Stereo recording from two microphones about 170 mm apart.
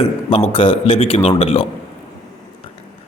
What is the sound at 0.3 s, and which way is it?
A man's voice, 35° left (ahead or behind).